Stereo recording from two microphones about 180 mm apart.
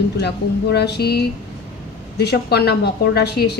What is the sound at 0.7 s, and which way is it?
A woman's voice, 65° left (ahead or behind).